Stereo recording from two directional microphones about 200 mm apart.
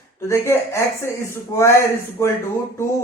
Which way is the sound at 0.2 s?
15° left (ahead or behind).